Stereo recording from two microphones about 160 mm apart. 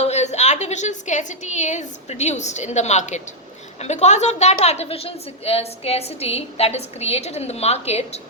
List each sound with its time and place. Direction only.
0.0 s a woman's voice: 45° left (ahead or behind)